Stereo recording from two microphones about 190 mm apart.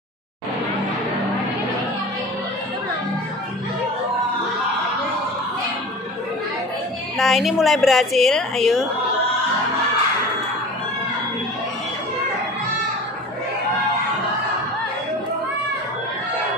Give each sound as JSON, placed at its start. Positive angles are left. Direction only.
{"t": 7.2, "sound": "a woman's voice", "side_deg": 0}